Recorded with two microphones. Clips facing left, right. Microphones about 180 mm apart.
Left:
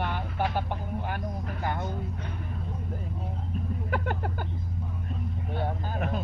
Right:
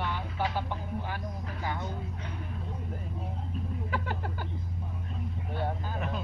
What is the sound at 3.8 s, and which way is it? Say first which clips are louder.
Speech: left 5 dB; 55° left (ahead or behind).